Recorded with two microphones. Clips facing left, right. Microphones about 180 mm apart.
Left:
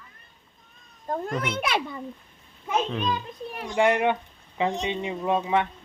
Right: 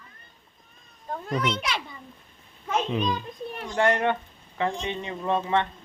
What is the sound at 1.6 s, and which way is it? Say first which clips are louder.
Speech: left 5 dB; 55° left (ahead or behind).